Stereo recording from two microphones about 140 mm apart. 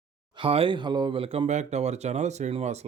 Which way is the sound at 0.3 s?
40° right (ahead or behind).